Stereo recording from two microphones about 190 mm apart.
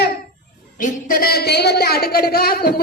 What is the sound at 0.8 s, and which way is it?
A woman's voice, 50° left (ahead or behind).